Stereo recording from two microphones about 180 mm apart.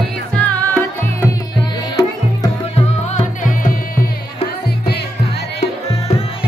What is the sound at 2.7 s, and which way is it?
Music, 45° left (ahead or behind).